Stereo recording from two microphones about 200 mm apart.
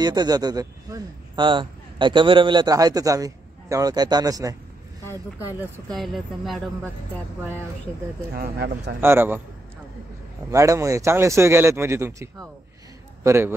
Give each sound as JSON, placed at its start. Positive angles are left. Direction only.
{"t": 0.0, "sound": "speech", "side_deg": -20}
{"t": 5.9, "sound": "speech", "side_deg": 0}
{"t": 8.4, "sound": "speech", "side_deg": -50}
{"t": 9.0, "sound": "speech", "side_deg": -10}
{"t": 10.5, "sound": "a man's voice", "side_deg": -15}